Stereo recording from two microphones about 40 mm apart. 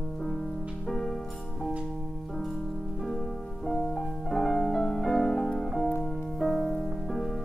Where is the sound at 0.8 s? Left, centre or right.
Centre.